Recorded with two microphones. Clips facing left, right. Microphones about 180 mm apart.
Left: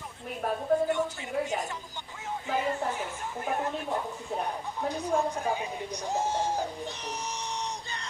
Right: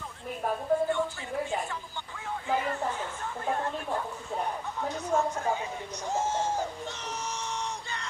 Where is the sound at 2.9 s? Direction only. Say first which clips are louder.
Left 1 dB; 15° left (ahead or behind).